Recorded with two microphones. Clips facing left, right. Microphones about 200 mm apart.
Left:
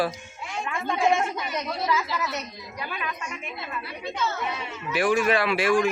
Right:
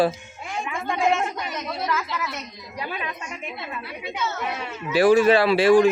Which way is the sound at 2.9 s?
25° right (ahead or behind).